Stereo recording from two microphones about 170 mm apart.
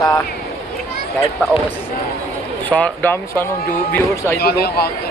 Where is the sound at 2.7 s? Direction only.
10° left (ahead or behind).